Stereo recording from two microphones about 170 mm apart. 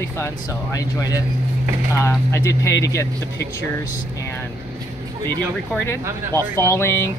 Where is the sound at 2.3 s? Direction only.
15° left (ahead or behind).